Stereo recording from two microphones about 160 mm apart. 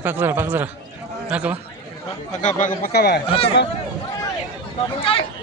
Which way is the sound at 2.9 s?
90° left.